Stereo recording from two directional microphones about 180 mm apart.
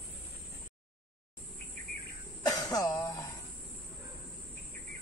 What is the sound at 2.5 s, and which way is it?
Cough, 20° left (ahead or behind).